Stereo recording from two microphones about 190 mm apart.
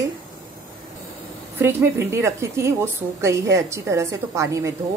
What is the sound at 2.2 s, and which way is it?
A woman's voice, 15° right (ahead or behind).